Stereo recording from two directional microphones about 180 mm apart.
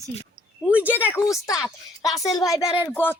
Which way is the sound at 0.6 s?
5° right (ahead or behind).